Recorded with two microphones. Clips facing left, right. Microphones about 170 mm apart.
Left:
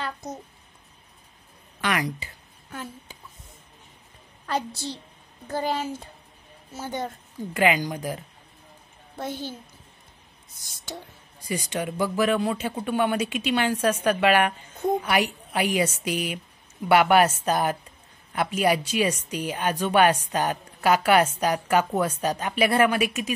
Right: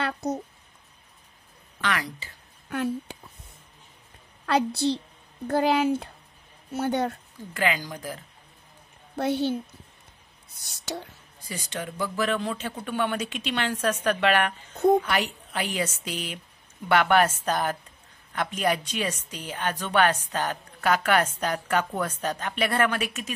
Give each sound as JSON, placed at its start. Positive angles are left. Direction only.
{"t": 0.0, "sound": "a sound", "side_deg": -65}
{"t": 1.8, "sound": "speech", "side_deg": 15}
{"t": 2.7, "sound": "a woman's voice", "side_deg": -65}
{"t": 4.5, "sound": "a woman's voice", "side_deg": -65}
{"t": 7.5, "sound": "speech", "side_deg": 20}
{"t": 9.1, "sound": "a child's voice", "side_deg": -70}
{"t": 11.4, "sound": "speech", "side_deg": 15}